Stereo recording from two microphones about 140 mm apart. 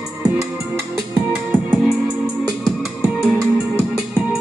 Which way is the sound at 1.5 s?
10° right (ahead or behind).